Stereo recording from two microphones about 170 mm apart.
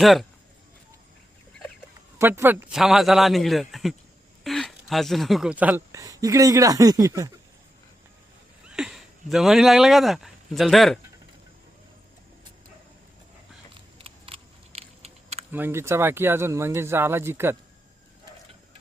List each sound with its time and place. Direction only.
0.0 s a man's voice: centre (ahead or behind)
2.1 s a man's voice: 15° right (ahead or behind)
8.6 s speech: 5° right (ahead or behind)
14.0 s a sound: 35° right (ahead or behind)
15.5 s speech: 15° right (ahead or behind)